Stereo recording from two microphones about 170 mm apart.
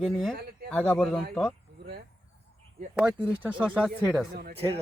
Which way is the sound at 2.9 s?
5° right (ahead or behind).